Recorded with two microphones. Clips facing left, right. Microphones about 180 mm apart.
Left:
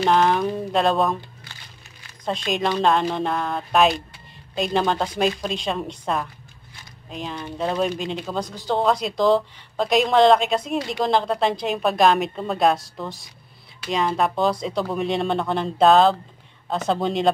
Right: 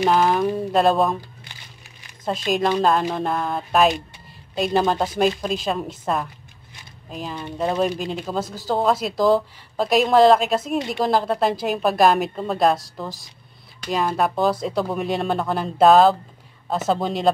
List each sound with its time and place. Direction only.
0.0 s a woman's voice: 5° right (ahead or behind)
2.2 s a woman's voice: 5° right (ahead or behind)